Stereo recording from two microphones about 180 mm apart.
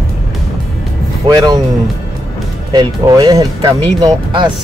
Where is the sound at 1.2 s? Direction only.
20° right (ahead or behind).